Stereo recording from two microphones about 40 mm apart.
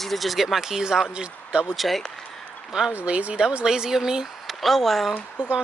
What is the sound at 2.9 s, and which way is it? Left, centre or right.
Speech, right.